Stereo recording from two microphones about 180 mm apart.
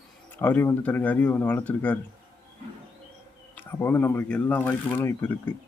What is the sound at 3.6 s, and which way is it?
Speech, 10° left (ahead or behind).